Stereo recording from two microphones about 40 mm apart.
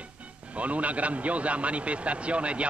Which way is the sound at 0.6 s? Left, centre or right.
Right.